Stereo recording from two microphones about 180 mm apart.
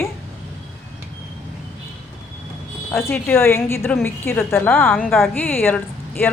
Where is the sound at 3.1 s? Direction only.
15° left (ahead or behind).